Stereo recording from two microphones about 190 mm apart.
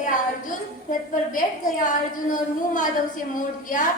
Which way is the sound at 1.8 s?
45° left (ahead or behind).